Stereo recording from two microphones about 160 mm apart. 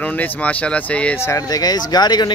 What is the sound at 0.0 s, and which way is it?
Speech, 10° left (ahead or behind).